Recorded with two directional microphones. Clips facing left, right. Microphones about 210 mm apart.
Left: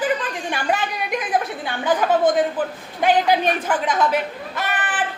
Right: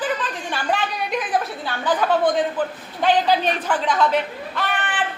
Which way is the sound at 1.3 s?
15° left (ahead or behind).